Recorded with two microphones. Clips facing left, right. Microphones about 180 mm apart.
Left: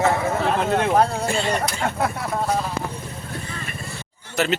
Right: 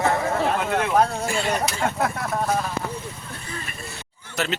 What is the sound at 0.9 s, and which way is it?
Speech, centre (ahead or behind).